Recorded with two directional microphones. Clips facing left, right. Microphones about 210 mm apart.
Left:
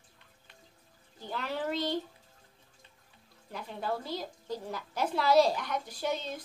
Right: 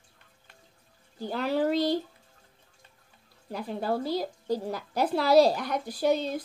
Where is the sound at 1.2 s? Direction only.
40° right (ahead or behind).